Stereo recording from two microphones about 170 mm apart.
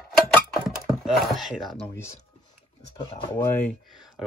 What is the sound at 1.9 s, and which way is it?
Speech, 15° left (ahead or behind).